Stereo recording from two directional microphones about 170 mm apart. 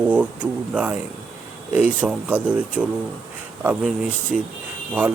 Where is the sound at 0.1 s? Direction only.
5° right (ahead or behind).